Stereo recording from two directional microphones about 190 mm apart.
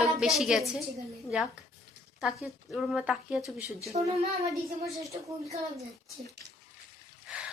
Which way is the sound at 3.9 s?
35° right (ahead or behind).